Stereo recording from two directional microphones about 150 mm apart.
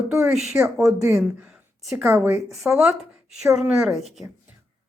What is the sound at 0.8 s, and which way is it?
Speech, 15° right (ahead or behind).